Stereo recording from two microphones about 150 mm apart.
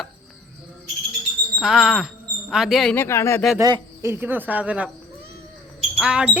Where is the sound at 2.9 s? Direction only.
15° left (ahead or behind).